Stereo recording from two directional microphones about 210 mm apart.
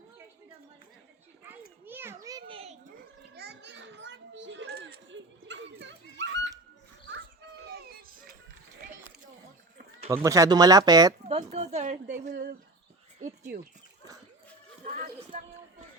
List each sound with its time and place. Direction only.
1.8 s children playing: 10° right (ahead or behind); by 2.9 s 30° right (ahead or behind)
3.3 s children playing: 55° right (ahead or behind)
10.2 s speech: 15° right (ahead or behind)
11.3 s a woman's voice: 30° right (ahead or behind)
14.8 s a sound: 40° right (ahead or behind)